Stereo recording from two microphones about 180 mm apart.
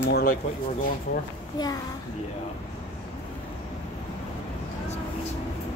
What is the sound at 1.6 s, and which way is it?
Speech, 25° left (ahead or behind).